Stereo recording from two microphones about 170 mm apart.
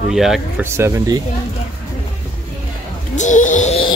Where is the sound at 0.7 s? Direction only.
15° right (ahead or behind).